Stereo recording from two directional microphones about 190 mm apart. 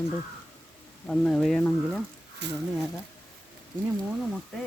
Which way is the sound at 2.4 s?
65° right (ahead or behind).